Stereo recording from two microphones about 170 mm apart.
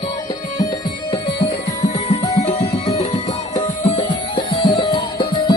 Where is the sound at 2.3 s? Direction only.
45° left (ahead or behind).